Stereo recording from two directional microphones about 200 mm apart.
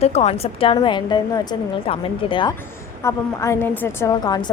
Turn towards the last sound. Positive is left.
turn(degrees=20)  # may be behind; listen again after turning